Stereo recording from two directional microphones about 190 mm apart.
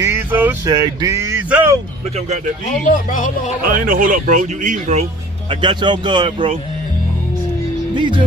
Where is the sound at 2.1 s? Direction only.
35° right (ahead or behind).